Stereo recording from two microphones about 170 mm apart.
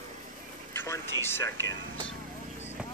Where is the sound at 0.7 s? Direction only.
15° left (ahead or behind).